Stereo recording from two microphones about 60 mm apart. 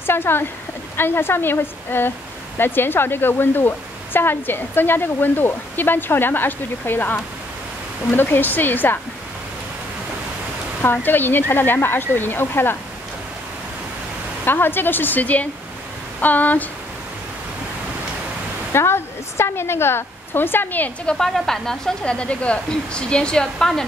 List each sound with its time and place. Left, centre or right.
0.0 s a woman's voice: left
10.8 s speech: left
14.4 s speech: left
18.7 s a woman's voice: left
21.0 s a woman's voice: centre